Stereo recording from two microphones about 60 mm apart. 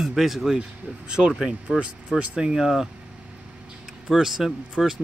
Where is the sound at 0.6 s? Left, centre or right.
Centre.